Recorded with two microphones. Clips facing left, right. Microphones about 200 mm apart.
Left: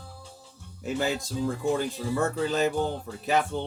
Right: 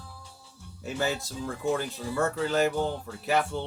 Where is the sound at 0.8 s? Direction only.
15° left (ahead or behind).